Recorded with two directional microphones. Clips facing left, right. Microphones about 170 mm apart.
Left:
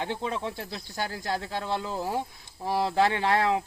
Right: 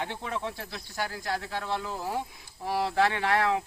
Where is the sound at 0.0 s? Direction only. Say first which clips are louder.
Left 3 dB; 25° left (ahead or behind).